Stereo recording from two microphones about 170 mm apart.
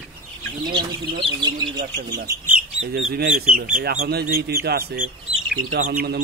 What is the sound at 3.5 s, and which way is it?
Speech, 60° right (ahead or behind).